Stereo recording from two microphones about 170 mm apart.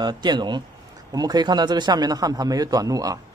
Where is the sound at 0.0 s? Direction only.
25° right (ahead or behind).